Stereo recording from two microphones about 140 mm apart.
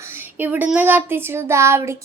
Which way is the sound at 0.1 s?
15° right (ahead or behind).